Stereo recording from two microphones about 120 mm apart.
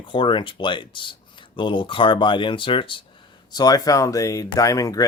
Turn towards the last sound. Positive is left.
turn(degrees=30)  # may be behind; listen again after turning